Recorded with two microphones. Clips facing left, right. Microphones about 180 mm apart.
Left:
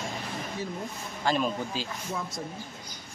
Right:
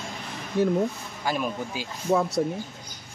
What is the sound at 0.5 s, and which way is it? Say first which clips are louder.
Speech: right 15 dB; 65° right (ahead or behind).